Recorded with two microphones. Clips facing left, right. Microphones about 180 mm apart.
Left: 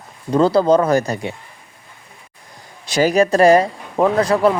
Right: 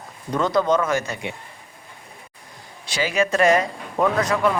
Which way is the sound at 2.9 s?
40° left (ahead or behind).